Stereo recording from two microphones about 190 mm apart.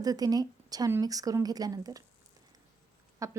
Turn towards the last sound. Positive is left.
turn(degrees=-15)  # may be behind; listen again after turning